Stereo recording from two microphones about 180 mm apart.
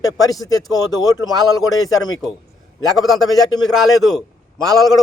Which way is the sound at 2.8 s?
Centre (ahead or behind).